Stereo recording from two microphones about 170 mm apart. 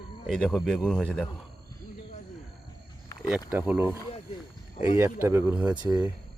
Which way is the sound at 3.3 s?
10° right (ahead or behind).